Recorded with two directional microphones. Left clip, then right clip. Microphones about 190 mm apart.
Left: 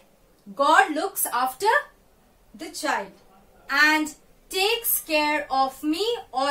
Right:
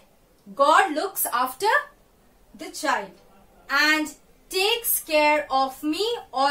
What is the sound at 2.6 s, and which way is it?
A woman's voice, 10° right (ahead or behind).